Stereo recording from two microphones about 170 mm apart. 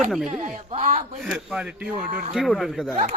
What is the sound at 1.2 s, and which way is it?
Speech, centre (ahead or behind).